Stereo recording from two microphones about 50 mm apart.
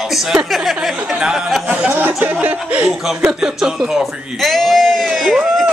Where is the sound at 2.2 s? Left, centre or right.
Right.